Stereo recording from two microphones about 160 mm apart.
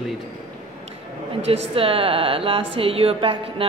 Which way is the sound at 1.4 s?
35° right (ahead or behind).